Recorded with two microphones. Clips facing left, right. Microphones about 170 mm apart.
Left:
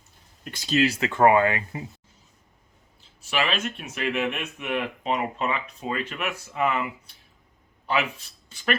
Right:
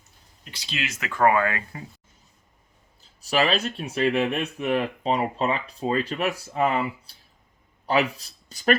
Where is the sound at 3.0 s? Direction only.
40° right (ahead or behind).